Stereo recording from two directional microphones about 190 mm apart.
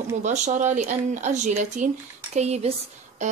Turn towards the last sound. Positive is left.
turn(degrees=-35)  # may be behind; listen again after turning